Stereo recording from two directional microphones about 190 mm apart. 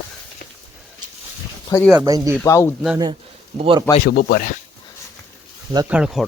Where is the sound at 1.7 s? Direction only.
20° left (ahead or behind).